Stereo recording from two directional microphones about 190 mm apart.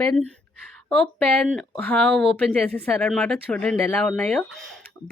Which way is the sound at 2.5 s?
10° left (ahead or behind).